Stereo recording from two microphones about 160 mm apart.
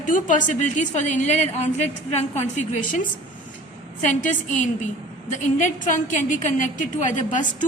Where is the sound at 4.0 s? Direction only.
50° left (ahead or behind).